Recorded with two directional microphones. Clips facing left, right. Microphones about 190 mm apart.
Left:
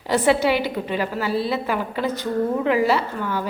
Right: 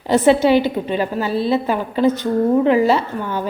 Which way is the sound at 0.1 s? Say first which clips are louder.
Right 6 dB; 25° right (ahead or behind).